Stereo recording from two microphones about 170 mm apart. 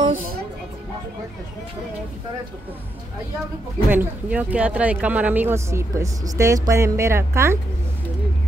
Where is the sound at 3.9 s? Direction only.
10° right (ahead or behind).